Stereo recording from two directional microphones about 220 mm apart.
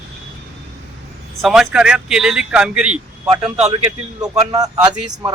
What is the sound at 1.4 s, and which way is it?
Speech, centre (ahead or behind).